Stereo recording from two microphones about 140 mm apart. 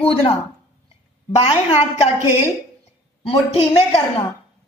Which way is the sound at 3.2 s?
40° left (ahead or behind).